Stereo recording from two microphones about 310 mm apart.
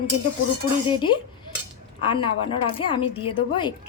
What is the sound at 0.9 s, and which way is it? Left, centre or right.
A woman's voice, centre.